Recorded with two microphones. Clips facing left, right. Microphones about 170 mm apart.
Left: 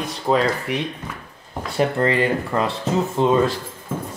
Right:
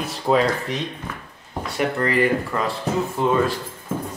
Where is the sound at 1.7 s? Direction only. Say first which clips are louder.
Left 2 dB; 30° left (ahead or behind).